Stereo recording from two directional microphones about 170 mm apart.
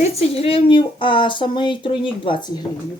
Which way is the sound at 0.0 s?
35° left (ahead or behind).